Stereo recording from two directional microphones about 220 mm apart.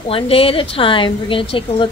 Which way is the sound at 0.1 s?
25° left (ahead or behind).